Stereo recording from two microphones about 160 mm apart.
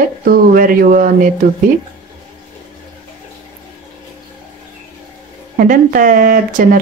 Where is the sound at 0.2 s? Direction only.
65° right (ahead or behind).